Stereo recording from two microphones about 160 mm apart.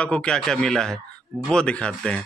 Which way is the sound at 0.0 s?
5° left (ahead or behind).